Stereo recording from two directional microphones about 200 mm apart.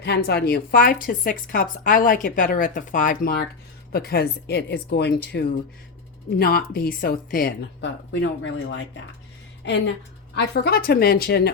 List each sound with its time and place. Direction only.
0.0 s a woman's voice: 55° left (ahead or behind)
10.3 s a woman's voice: 55° left (ahead or behind)